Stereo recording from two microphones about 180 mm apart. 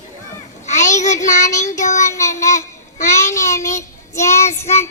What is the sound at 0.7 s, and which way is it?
Child singing, 40° left (ahead or behind).